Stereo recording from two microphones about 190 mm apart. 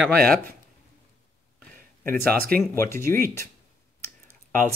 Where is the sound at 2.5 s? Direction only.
50° right (ahead or behind).